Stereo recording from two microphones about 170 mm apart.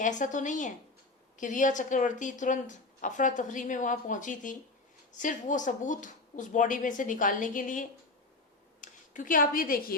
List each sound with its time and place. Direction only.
0.0 s speech: 45° left (ahead or behind)